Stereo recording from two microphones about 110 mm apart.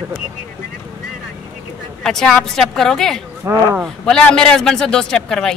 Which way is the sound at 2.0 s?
5° left (ahead or behind).